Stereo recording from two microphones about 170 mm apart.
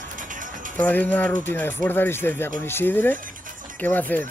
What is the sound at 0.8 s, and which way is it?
Speech, 10° left (ahead or behind).